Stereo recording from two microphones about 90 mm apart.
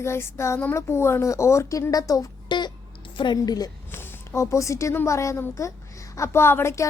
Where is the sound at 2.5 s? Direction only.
60° left (ahead or behind).